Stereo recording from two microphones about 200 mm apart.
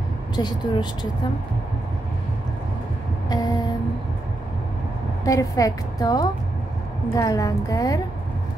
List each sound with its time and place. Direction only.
0.4 s speech: 20° left (ahead or behind)
3.3 s music: 20° left (ahead or behind)
5.2 s a woman's voice: 15° left (ahead or behind)